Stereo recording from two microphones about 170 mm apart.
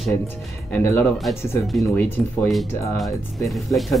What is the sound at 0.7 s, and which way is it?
Speech, 10° left (ahead or behind).